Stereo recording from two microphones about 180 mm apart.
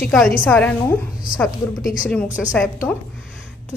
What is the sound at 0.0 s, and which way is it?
Speech, centre (ahead or behind).